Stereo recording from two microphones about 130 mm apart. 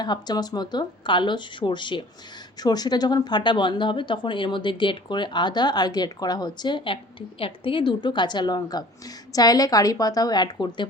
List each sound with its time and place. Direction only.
0.0 s a woman's voice: 35° left (ahead or behind)